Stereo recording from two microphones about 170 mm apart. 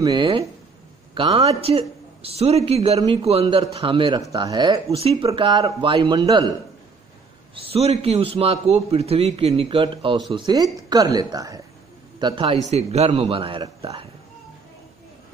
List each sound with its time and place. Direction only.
0.0 s a man's voice: 25° right (ahead or behind)
7.5 s a man's voice: 35° right (ahead or behind)
12.6 s a man's voice: 40° right (ahead or behind)